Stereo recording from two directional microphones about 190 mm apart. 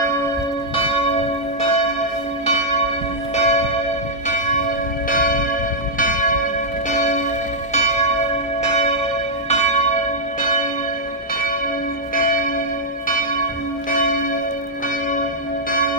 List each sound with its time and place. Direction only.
0.7 s church bell: 30° left (ahead or behind)
3.3 s church bell: 35° left (ahead or behind)
5.1 s church bell: 45° left (ahead or behind)
12.2 s church bell: 45° left (ahead or behind)
13.8 s church bell: 45° left (ahead or behind)